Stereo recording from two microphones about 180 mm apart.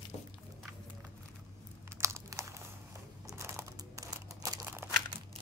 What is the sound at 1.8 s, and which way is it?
Crumpling, 15° right (ahead or behind).